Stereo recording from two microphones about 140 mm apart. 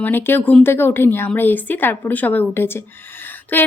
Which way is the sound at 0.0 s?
15° left (ahead or behind).